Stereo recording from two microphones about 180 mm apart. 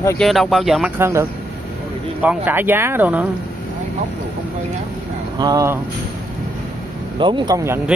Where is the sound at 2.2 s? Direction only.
10° right (ahead or behind).